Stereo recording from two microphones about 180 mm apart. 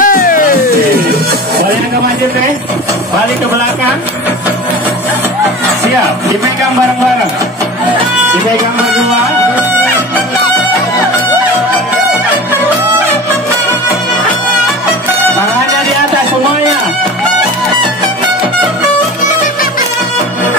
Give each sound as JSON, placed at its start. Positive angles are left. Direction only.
{"t": 0.0, "sound": "music", "side_deg": 50}